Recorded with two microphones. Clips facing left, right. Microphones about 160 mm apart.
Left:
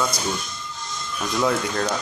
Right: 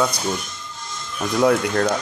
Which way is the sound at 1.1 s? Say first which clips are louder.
Right 5 dB; 55° right (ahead or behind).